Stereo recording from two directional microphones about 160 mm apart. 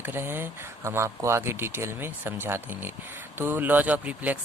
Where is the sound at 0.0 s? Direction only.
15° right (ahead or behind).